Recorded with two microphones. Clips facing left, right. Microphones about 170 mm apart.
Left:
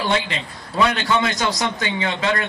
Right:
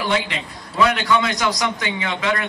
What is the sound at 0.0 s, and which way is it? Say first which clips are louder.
A woman's voice: even; 25° left (ahead or behind).